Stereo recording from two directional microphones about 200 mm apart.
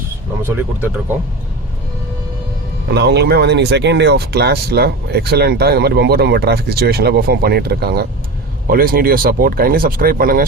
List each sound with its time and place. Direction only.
0.4 s speech: 10° right (ahead or behind)
2.9 s speech: 55° right (ahead or behind)